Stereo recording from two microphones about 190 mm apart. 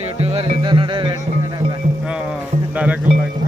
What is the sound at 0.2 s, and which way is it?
Music, 30° right (ahead or behind).